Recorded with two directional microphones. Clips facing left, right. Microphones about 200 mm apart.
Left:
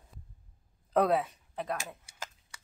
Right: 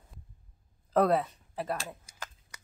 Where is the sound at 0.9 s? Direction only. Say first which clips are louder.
Right 1 dB; centre (ahead or behind).